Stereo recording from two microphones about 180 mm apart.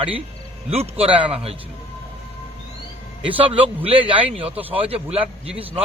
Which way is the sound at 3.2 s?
30° right (ahead or behind).